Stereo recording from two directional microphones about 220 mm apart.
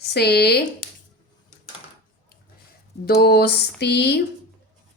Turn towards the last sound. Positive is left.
turn(degrees=50)  # may be behind; listen again after turning